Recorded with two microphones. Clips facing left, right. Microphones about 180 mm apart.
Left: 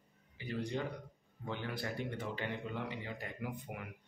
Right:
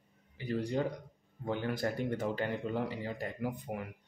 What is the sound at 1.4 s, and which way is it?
Speech, 45° right (ahead or behind).